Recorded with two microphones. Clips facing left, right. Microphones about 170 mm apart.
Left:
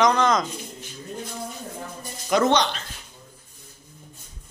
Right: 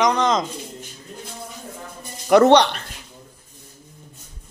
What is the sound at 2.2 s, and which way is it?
Speech, 65° right (ahead or behind).